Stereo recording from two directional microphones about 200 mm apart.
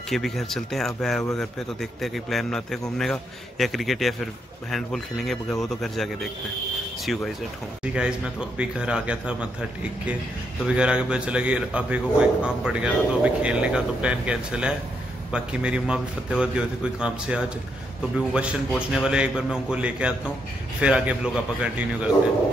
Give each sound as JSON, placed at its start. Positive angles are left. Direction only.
{"t": 0.1, "sound": "a man's voice", "side_deg": 0}
{"t": 10.6, "sound": "a man's voice", "side_deg": -5}